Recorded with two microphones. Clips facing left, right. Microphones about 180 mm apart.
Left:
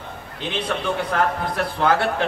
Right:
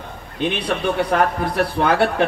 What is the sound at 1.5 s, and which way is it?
Speech, 65° right (ahead or behind).